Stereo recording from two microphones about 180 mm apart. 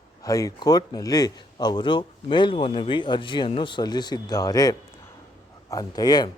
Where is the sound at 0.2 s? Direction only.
20° left (ahead or behind).